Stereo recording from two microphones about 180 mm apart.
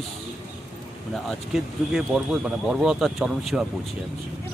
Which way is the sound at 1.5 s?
5° right (ahead or behind).